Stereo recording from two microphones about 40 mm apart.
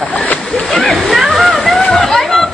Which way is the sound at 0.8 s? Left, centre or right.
Centre.